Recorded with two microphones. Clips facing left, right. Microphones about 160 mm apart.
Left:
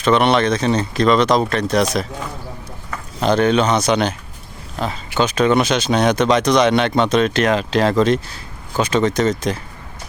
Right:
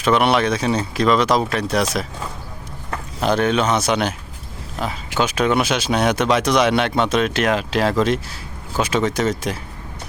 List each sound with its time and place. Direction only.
0.0 s speech: 5° right (ahead or behind)
3.2 s speech: 5° right (ahead or behind)